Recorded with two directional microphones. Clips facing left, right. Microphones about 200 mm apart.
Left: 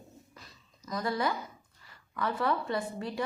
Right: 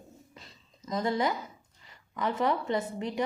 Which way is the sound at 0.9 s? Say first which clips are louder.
Right 3 dB; 25° right (ahead or behind).